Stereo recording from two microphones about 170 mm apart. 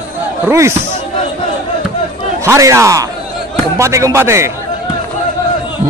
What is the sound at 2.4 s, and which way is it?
A man's voice, 15° right (ahead or behind).